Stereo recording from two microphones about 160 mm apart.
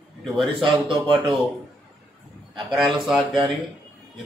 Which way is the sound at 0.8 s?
30° right (ahead or behind).